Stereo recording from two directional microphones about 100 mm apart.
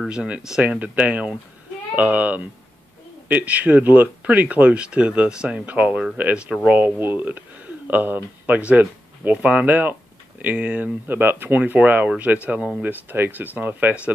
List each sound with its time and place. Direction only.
0.1 s speech: 10° right (ahead or behind)